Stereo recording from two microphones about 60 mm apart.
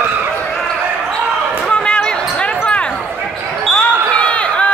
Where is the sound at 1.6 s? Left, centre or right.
Centre.